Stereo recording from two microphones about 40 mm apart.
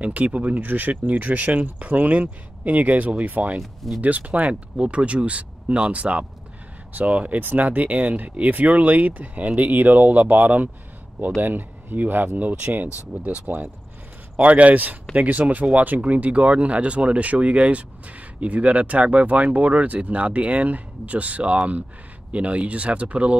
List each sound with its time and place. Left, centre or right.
0.0 s speech: right
0.6 s speech: right
11.3 s speech: right
12.8 s speech: right